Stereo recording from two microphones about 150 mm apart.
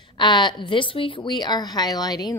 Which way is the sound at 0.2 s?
30° left (ahead or behind).